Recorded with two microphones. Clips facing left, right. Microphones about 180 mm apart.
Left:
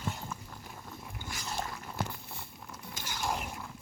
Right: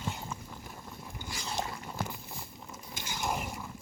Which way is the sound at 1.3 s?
25° right (ahead or behind).